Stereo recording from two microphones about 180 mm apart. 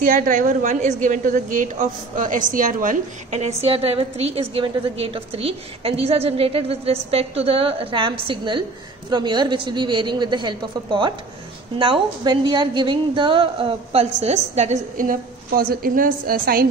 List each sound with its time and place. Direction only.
0.0 s a woman's voice: 45° right (ahead or behind)